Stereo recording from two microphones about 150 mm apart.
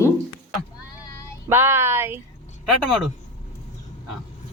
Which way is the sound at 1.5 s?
15° right (ahead or behind).